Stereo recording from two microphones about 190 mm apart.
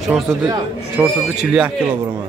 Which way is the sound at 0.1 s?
10° right (ahead or behind).